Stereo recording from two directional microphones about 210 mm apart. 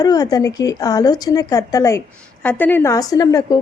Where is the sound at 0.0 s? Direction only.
20° left (ahead or behind).